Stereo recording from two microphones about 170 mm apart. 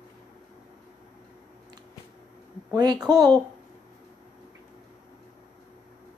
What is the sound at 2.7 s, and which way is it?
Speech, 25° right (ahead or behind).